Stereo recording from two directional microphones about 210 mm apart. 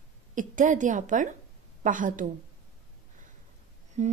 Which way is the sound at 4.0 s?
35° right (ahead or behind).